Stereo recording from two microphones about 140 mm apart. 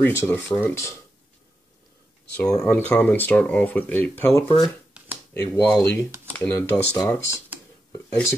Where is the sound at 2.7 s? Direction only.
10° left (ahead or behind).